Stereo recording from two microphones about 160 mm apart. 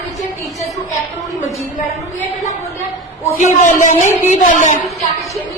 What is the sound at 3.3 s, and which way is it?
A woman's voice, 50° left (ahead or behind).